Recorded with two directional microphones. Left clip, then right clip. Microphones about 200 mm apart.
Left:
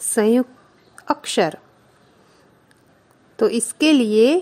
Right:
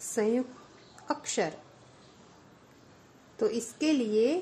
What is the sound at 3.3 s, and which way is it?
A woman's voice, 45° left (ahead or behind).